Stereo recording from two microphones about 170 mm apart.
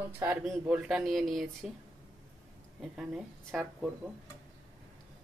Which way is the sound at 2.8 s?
5° right (ahead or behind).